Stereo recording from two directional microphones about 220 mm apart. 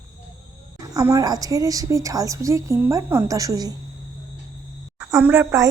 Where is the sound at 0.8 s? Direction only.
15° right (ahead or behind).